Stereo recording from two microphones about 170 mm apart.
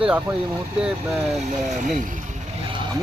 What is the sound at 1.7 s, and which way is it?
Speech, 50° right (ahead or behind).